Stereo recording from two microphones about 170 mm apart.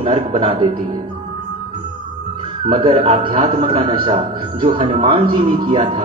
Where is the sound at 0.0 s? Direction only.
30° right (ahead or behind).